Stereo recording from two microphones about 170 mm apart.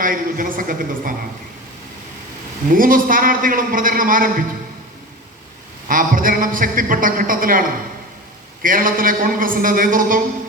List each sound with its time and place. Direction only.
0.0 s a man's voice: 55° right (ahead or behind)
2.6 s a man's voice: 55° right (ahead or behind)
5.9 s a man's voice: 55° right (ahead or behind)
8.6 s a man's voice: 55° right (ahead or behind)